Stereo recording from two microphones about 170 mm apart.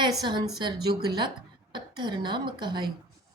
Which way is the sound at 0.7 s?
70° right (ahead or behind).